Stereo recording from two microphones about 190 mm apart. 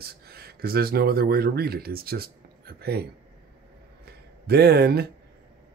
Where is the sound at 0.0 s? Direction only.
55° right (ahead or behind).